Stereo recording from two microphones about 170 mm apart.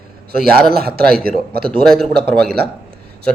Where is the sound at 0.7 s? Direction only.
65° right (ahead or behind).